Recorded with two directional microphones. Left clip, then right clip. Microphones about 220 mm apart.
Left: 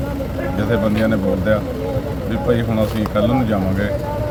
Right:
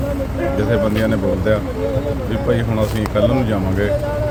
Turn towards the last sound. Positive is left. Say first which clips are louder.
# right 1 dB
turn(degrees=0)  # may be behind; listen again after turning